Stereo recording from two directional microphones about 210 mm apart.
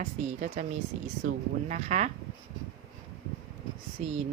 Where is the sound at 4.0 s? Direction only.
35° right (ahead or behind).